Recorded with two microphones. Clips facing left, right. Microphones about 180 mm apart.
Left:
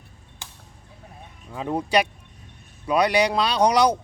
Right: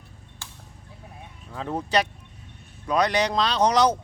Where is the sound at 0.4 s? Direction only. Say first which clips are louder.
Left 2 dB; 15° left (ahead or behind).